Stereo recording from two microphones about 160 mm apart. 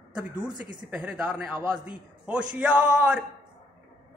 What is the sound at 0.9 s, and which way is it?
A man's voice, 5° right (ahead or behind).